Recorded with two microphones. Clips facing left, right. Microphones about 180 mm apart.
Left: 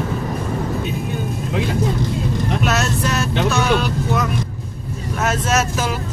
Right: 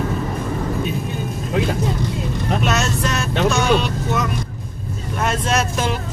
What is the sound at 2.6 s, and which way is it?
Vehicle, 5° left (ahead or behind).